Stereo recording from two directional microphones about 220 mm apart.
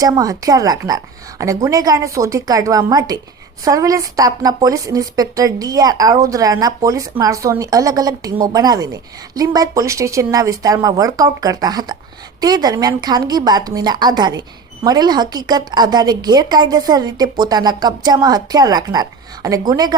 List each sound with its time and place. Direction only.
0.0 s a woman's voice: 15° right (ahead or behind)